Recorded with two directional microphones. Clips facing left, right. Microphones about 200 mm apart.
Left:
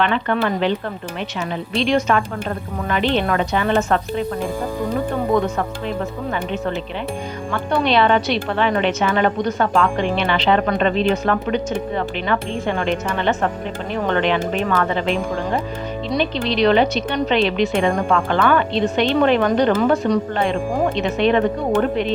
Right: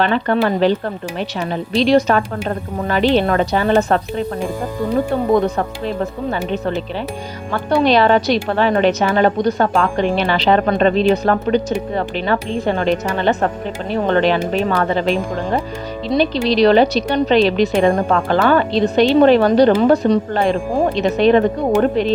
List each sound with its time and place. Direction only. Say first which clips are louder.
0.0 s a woman's voice: right 3 dB; 35° right (ahead or behind)
5.3 s a woman's voice: right 3 dB; 35° right (ahead or behind)
7.9 s a woman's voice: right 3 dB; 40° right (ahead or behind)